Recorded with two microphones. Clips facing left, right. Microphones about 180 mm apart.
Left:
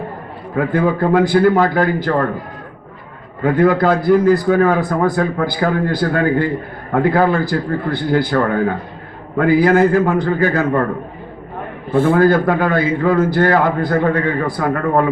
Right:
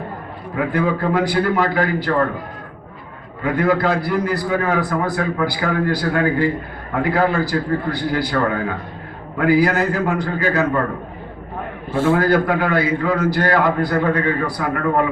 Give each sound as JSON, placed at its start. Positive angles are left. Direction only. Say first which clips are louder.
{"t": 0.5, "sound": "a man's voice", "louder": "left 3 dB", "side_deg": 45}
{"t": 3.4, "sound": "a man's voice", "louder": "left 4 dB", "side_deg": 45}
{"t": 11.9, "sound": "a man's voice", "louder": "left 4 dB", "side_deg": 55}